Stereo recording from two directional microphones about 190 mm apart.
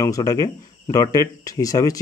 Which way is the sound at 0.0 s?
20° left (ahead or behind).